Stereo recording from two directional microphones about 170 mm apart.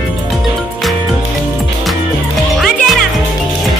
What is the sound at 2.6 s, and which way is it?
Music, centre (ahead or behind).